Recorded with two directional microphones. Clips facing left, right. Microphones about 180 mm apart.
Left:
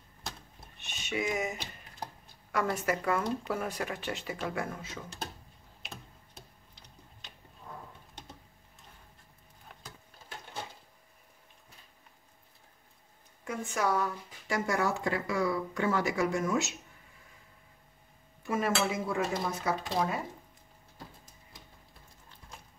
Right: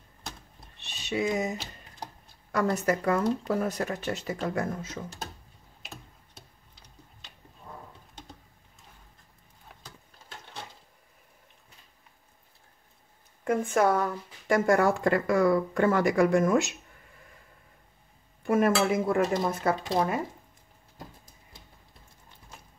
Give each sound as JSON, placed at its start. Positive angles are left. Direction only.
{"t": 0.7, "sound": "a sound", "side_deg": -35}
{"t": 1.3, "sound": "speech", "side_deg": -35}
{"t": 13.7, "sound": "speech", "side_deg": -55}
{"t": 18.4, "sound": "speech", "side_deg": -55}